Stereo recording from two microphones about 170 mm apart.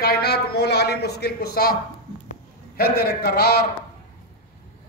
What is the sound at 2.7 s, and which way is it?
Speech, 65° left (ahead or behind).